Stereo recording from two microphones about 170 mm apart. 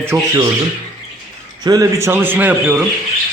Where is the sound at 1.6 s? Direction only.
20° right (ahead or behind).